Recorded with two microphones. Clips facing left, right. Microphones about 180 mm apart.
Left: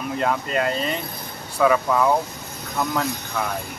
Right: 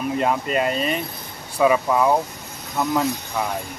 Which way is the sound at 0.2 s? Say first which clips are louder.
Even; 20° right (ahead or behind).